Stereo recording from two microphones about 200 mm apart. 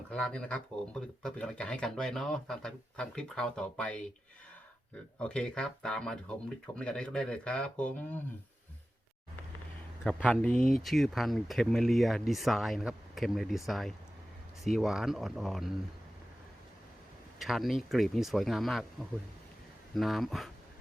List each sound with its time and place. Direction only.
0.1 s speech: 5° left (ahead or behind)
5.2 s speech: 5° left (ahead or behind)
10.0 s speech: 5° left (ahead or behind)
17.4 s speech: centre (ahead or behind)
20.0 s speech: centre (ahead or behind)